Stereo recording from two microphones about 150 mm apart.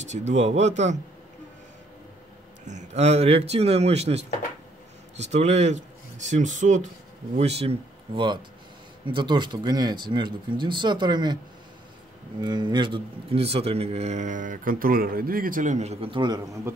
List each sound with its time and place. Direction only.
0.1 s a man's voice: 50° right (ahead or behind)
2.6 s a man's voice: 55° right (ahead or behind)
7.3 s speech: 45° right (ahead or behind)
12.4 s a man's voice: 30° right (ahead or behind)